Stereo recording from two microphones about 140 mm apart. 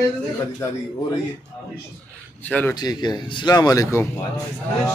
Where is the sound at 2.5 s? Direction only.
10° left (ahead or behind).